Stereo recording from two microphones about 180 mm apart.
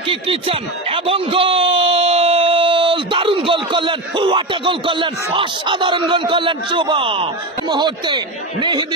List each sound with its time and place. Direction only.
0.1 s speech: 30° right (ahead or behind)